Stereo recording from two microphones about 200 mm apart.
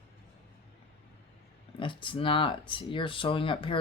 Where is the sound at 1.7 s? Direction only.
25° left (ahead or behind).